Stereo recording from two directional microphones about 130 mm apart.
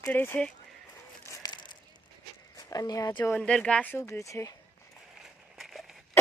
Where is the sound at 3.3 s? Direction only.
10° left (ahead or behind).